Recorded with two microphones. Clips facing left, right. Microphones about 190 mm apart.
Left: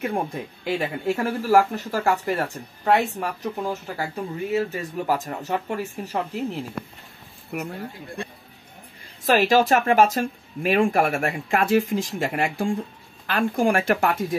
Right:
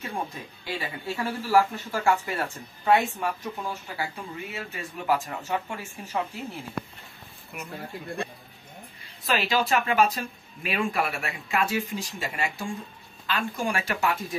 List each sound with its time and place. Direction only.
0.0 s speech: 55° left (ahead or behind); by 6.2 s 40° left (ahead or behind)
7.5 s speech: 65° left (ahead or behind)
9.2 s speech: 45° left (ahead or behind)